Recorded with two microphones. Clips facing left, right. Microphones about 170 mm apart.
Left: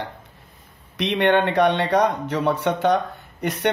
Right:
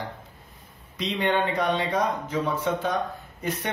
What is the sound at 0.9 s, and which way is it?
Speech, 70° left (ahead or behind).